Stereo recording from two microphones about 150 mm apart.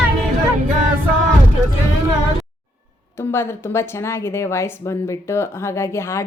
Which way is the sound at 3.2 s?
15° left (ahead or behind).